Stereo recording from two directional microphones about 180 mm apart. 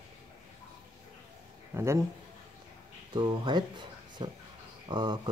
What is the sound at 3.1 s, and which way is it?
Speech, 25° right (ahead or behind).